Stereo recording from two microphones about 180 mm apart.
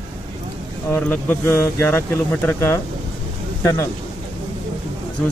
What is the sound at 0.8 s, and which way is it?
Speech, 10° left (ahead or behind).